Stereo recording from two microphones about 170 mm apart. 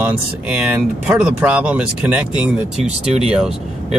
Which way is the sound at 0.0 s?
10° right (ahead or behind).